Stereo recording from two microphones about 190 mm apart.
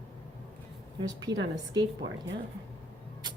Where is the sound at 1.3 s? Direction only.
25° right (ahead or behind).